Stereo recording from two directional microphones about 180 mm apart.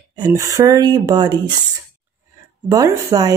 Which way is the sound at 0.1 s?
20° right (ahead or behind).